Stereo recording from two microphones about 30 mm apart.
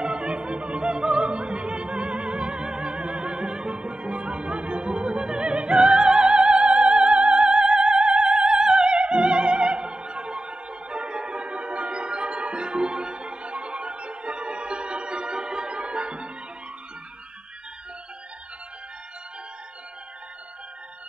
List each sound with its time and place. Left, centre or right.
0.0 s music: right
0.7 s opera: right
2.3 s music: right
5.4 s opera: right
5.8 s opera: right
6.2 s music: right
7.4 s opera: right